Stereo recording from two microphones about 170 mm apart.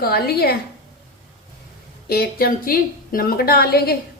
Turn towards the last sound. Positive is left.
turn(degrees=65)  # may be behind; listen again after turning